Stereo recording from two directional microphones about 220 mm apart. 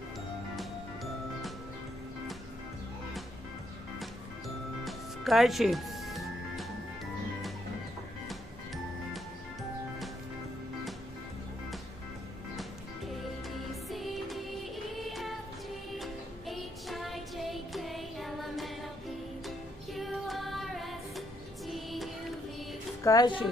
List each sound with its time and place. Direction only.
4.8 s music: centre (ahead or behind)
13.8 s music: centre (ahead or behind)
23.0 s speech: 15° left (ahead or behind)